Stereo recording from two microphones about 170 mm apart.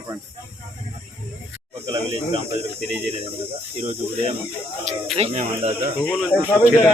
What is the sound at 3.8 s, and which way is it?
Speech, 35° right (ahead or behind).